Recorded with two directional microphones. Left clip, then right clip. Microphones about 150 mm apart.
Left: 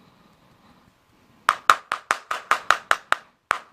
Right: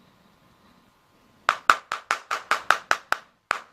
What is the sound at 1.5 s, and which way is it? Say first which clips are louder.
Clapping: left 2 dB; 25° left (ahead or behind).